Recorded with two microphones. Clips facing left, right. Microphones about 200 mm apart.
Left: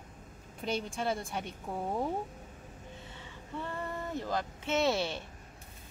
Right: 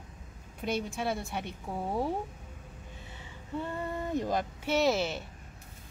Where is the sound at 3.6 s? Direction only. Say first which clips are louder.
Right 2 dB; 15° right (ahead or behind).